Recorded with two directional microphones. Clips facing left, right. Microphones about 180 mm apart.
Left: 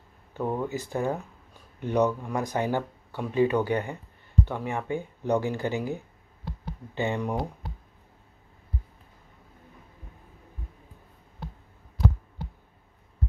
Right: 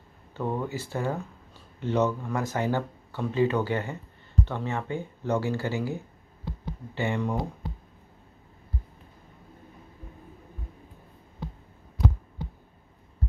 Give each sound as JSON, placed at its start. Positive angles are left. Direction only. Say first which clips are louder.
{"t": 0.3, "sound": "speech", "louder": "left 1 dB", "side_deg": 10}
{"t": 7.0, "sound": "speech", "louder": "even", "side_deg": 15}